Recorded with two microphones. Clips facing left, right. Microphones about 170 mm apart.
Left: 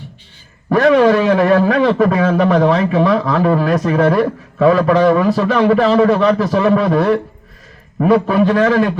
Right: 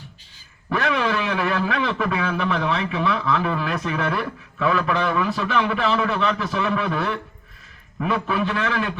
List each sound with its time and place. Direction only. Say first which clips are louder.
0.7 s a man's voice: left 12 dB; 40° left (ahead or behind)